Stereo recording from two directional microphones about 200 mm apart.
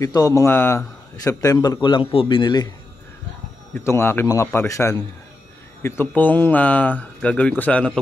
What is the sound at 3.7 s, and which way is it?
Speech, 10° left (ahead or behind).